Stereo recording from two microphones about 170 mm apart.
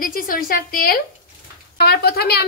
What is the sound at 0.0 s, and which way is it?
Speech, 55° left (ahead or behind).